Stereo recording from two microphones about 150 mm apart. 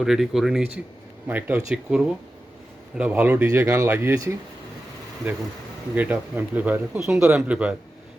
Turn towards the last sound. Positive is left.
turn(degrees=-10)  # may be behind; listen again after turning